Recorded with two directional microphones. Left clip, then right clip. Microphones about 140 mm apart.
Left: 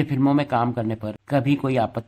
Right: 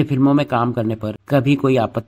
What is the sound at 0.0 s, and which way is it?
A man's voice, 25° right (ahead or behind).